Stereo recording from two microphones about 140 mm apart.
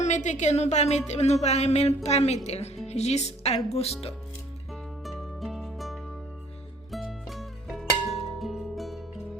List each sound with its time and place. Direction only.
0.0 s a woman's voice: 60° left (ahead or behind)
4.7 s music: centre (ahead or behind)